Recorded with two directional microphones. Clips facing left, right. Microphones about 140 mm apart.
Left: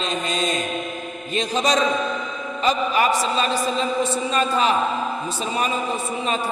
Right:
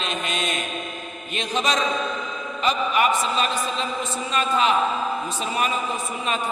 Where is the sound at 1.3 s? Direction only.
35° left (ahead or behind).